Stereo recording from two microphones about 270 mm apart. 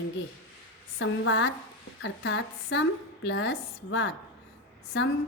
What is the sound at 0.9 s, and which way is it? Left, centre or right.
A woman's voice, left.